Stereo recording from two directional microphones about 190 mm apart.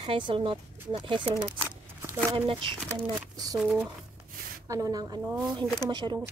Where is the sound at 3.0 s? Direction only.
20° right (ahead or behind).